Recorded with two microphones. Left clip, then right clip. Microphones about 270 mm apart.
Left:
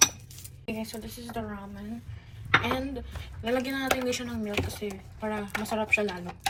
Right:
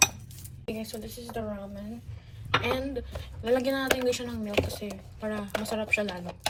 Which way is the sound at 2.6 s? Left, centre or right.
Centre.